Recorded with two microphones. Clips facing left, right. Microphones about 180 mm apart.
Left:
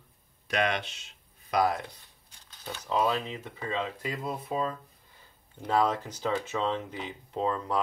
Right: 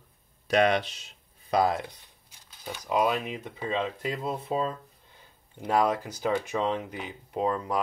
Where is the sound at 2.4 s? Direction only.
10° right (ahead or behind); by 4.7 s 30° right (ahead or behind).